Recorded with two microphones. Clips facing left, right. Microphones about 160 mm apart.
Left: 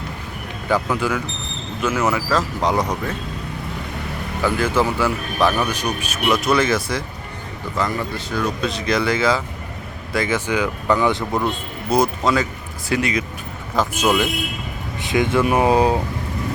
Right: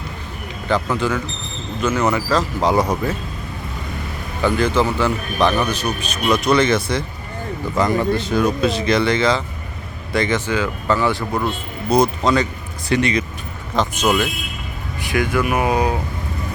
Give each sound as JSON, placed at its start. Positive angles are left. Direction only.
{"t": 0.7, "sound": "speech", "side_deg": 10}
{"t": 4.4, "sound": "speech", "side_deg": 5}
{"t": 7.8, "sound": "speech", "side_deg": -20}
{"t": 8.6, "sound": "speech", "side_deg": 0}
{"t": 11.9, "sound": "speech", "side_deg": 5}
{"t": 15.0, "sound": "speech", "side_deg": 20}